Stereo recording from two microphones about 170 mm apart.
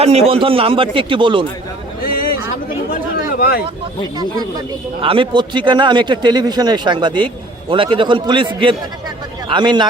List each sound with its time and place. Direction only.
0.0 s speech: 40° right (ahead or behind)
2.0 s a sound: 60° left (ahead or behind)
3.3 s speech: 60° left (ahead or behind)
4.9 s a man's voice: 30° right (ahead or behind)